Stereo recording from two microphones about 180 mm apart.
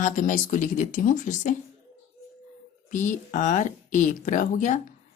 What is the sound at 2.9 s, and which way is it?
Speech, 45° left (ahead or behind).